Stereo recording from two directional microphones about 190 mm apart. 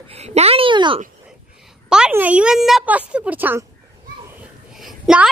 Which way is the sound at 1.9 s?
5° right (ahead or behind).